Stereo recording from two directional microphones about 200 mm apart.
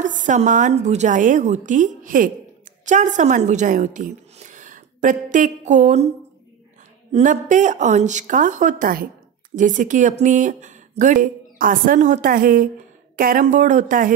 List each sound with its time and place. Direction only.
0.0 s speech: 40° right (ahead or behind)
7.1 s speech: 35° right (ahead or behind)